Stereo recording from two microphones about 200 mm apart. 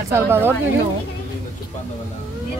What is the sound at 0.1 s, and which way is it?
Speech, 10° right (ahead or behind).